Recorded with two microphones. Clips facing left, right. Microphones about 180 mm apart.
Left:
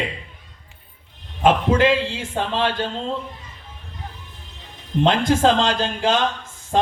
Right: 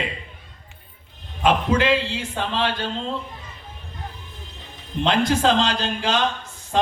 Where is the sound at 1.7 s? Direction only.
45° left (ahead or behind).